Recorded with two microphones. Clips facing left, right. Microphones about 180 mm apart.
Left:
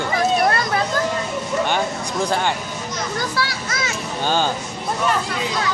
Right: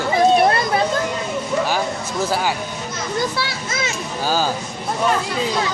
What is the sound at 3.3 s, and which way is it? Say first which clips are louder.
Speech: even; 25° right (ahead or behind).